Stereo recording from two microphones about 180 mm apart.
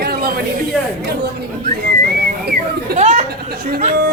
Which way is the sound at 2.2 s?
60° right (ahead or behind).